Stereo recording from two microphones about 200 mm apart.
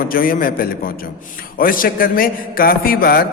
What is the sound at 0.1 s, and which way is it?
Mantra, 45° left (ahead or behind).